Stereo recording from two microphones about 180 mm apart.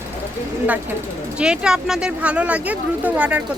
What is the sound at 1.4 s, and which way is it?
Speech, 5° right (ahead or behind).